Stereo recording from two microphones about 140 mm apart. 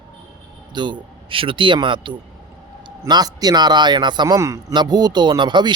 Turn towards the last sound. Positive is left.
turn(degrees=-35)  # may be behind; listen again after turning